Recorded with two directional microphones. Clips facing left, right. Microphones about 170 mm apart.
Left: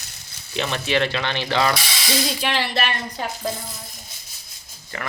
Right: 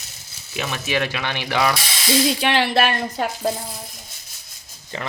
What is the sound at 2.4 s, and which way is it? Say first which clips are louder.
Speech: right 5 dB; 60° right (ahead or behind).